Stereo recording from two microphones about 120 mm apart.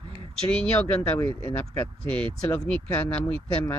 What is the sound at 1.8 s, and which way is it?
Speech, 10° left (ahead or behind).